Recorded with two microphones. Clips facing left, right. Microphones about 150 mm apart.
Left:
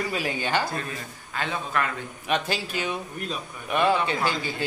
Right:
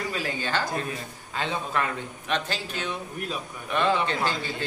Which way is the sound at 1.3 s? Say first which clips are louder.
Even; 25° right (ahead or behind).